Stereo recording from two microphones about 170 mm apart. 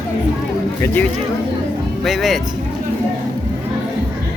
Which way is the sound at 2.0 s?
Centre (ahead or behind).